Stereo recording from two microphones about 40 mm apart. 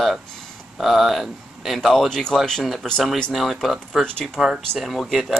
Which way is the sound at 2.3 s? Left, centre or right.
Centre.